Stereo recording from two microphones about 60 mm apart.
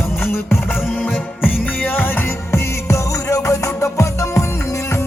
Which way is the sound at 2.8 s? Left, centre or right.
Left.